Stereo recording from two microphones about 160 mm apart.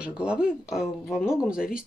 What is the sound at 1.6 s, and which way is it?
Speech, 60° left (ahead or behind).